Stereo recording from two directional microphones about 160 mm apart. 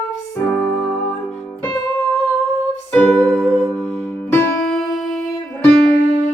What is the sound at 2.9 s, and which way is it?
Music, 5° left (ahead or behind).